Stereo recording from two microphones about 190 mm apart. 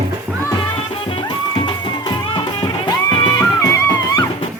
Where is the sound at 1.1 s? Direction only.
25° left (ahead or behind).